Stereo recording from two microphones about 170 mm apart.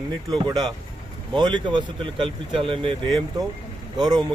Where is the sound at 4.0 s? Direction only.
25° right (ahead or behind).